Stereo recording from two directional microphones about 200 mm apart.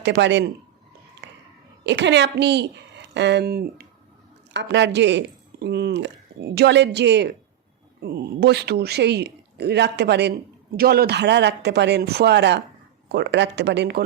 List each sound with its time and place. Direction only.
0.0 s speech: 60° right (ahead or behind)
1.8 s a child's voice: 60° right (ahead or behind)
4.5 s speech: 60° right (ahead or behind)